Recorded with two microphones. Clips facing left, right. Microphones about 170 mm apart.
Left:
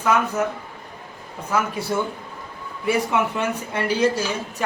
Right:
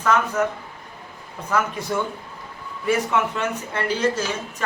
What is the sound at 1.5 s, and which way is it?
Speech, 10° left (ahead or behind).